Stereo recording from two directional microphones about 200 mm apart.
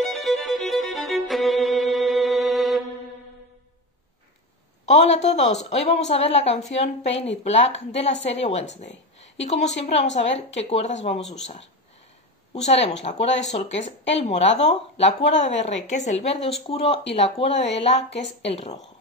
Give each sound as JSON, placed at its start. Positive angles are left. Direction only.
{"t": 0.0, "sound": "violin", "side_deg": 0}
{"t": 4.8, "sound": "a woman's voice", "side_deg": 35}
{"t": 11.1, "sound": "speech", "side_deg": 0}
{"t": 12.5, "sound": "a woman's voice", "side_deg": 35}